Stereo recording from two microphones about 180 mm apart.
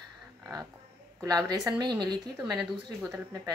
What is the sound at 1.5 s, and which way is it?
A woman's voice, 20° right (ahead or behind).